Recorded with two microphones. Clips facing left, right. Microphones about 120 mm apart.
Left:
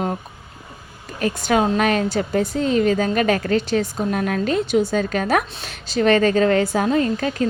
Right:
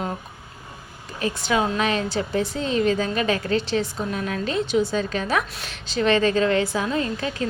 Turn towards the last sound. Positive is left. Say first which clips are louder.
# left 5 dB
turn(degrees=40)  # may be behind; listen again after turning